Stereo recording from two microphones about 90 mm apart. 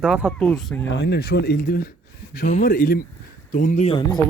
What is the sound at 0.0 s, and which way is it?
Speech, 10° right (ahead or behind).